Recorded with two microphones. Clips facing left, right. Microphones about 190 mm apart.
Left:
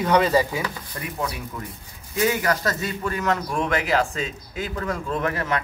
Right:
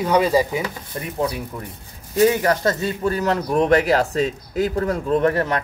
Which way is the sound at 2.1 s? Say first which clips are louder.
Right 6 dB; 30° right (ahead or behind).